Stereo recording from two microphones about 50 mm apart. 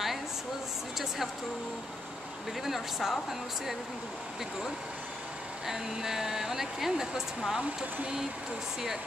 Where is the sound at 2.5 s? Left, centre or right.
Centre.